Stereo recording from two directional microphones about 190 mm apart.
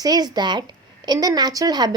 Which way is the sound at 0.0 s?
20° right (ahead or behind).